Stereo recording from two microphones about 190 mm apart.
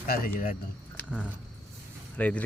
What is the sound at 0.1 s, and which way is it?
Speech, 45° left (ahead or behind).